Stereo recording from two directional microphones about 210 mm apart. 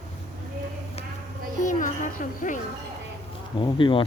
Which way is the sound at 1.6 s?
40° left (ahead or behind).